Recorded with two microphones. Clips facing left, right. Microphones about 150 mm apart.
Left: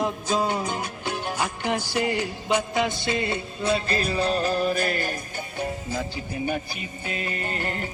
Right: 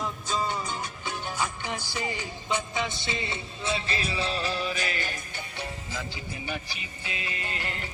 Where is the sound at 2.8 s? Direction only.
55° left (ahead or behind).